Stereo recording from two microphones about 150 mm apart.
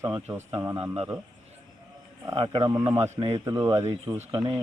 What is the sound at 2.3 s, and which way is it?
Speech, 35° right (ahead or behind).